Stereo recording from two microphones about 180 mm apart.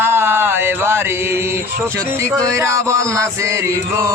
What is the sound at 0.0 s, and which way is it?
Mantra, 15° right (ahead or behind).